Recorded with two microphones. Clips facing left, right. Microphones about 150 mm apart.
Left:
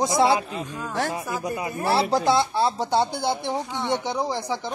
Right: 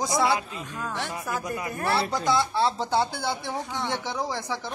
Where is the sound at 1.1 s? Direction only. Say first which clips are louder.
Left 3 dB; 25° left (ahead or behind).